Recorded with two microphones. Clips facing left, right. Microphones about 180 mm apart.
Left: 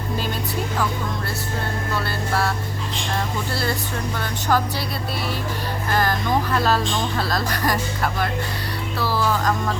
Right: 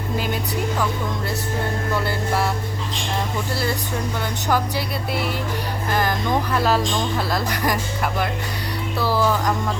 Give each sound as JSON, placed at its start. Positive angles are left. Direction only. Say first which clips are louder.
{"t": 2.0, "sound": "speech", "louder": "right 1 dB", "side_deg": -15}
{"t": 4.2, "sound": "speech", "louder": "left 1 dB", "side_deg": -15}
{"t": 5.9, "sound": "speech", "louder": "even", "side_deg": -15}